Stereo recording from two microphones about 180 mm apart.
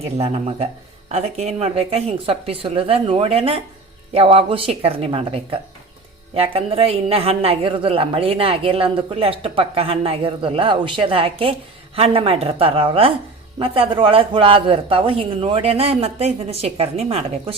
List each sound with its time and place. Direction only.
0.0 s a man's voice: 35° right (ahead or behind)